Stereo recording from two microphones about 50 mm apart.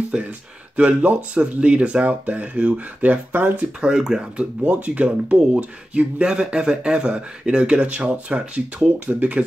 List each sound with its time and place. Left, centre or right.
0.1 s speech: centre; by 3.6 s right
3.8 s speech: centre